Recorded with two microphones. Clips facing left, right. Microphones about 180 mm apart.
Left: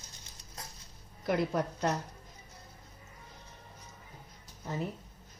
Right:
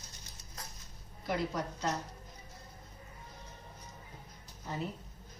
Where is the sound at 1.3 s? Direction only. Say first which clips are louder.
Left 4 dB; 60° left (ahead or behind).